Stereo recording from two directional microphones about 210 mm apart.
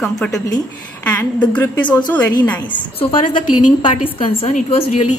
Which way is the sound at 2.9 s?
25° left (ahead or behind).